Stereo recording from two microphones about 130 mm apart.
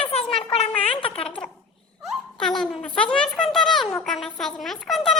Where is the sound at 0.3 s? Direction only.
50° left (ahead or behind).